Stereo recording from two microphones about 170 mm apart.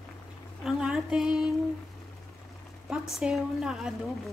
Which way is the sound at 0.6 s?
5° right (ahead or behind).